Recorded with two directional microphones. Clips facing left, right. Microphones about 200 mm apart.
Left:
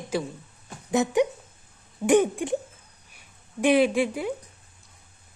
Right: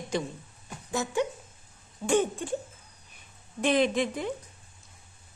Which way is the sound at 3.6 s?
10° left (ahead or behind).